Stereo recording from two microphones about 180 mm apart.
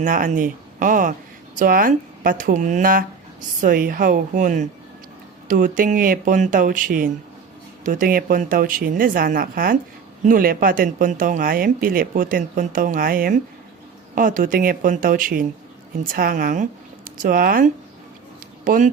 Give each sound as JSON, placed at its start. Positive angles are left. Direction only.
{"t": 0.0, "sound": "speech", "side_deg": -50}